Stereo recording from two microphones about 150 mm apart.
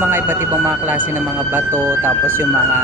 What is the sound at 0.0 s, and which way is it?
Speech, 15° right (ahead or behind).